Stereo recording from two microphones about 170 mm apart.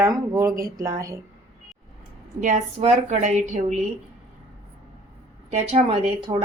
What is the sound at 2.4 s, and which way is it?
A woman's voice, 45° right (ahead or behind).